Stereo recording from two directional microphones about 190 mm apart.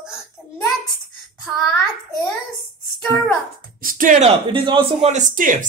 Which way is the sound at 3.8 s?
45° right (ahead or behind).